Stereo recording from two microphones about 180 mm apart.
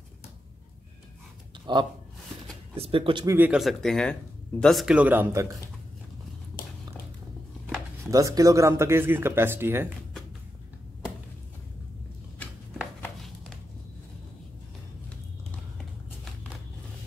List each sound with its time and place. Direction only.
1.7 s speech: 25° right (ahead or behind)
3.3 s speech: 10° right (ahead or behind)
8.1 s speech: 20° right (ahead or behind)
13.0 s a sound: 5° left (ahead or behind)